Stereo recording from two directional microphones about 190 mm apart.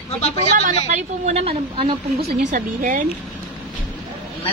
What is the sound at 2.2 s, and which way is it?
Speech, 40° right (ahead or behind).